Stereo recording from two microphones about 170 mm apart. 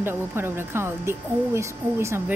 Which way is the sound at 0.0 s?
15° right (ahead or behind).